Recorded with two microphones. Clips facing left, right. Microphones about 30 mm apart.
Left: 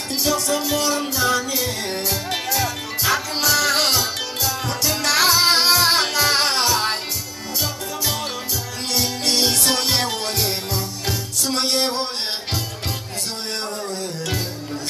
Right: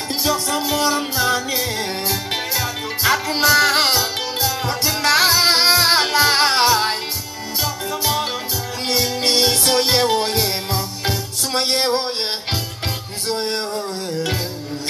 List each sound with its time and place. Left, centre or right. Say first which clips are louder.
0.1 s music: even; right
8.8 s music: right 3 dB; right
11.5 s a sound: right 3 dB; right